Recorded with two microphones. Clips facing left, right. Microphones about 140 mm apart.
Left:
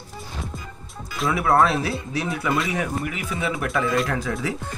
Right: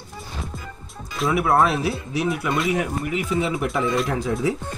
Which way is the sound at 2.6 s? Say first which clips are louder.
Right 3 dB; centre (ahead or behind).